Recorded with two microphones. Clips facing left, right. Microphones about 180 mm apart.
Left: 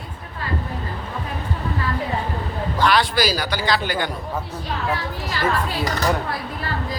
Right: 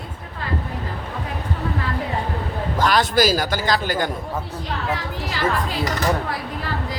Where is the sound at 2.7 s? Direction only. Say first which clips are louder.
Right 1 dB; 45° right (ahead or behind).